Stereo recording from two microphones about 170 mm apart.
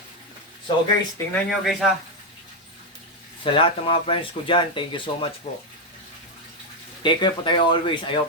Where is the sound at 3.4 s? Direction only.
30° left (ahead or behind).